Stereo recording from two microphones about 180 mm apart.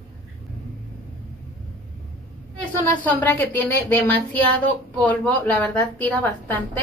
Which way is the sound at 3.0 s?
10° left (ahead or behind).